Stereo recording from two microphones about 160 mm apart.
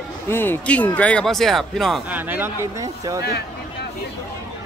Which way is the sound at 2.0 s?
10° right (ahead or behind).